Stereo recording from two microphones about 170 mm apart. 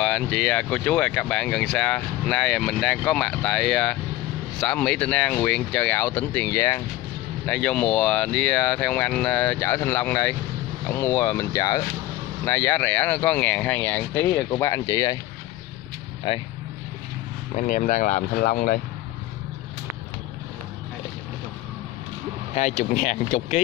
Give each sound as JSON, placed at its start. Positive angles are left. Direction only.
{"t": 0.0, "sound": "speech", "side_deg": 5}
{"t": 16.3, "sound": "speech", "side_deg": 35}
{"t": 17.6, "sound": "speech", "side_deg": 50}
{"t": 22.5, "sound": "speech", "side_deg": 45}